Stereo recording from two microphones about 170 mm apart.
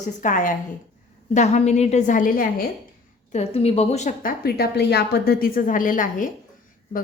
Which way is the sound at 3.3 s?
40° left (ahead or behind).